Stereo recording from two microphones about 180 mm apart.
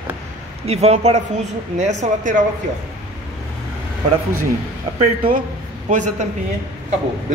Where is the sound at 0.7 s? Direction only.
35° right (ahead or behind).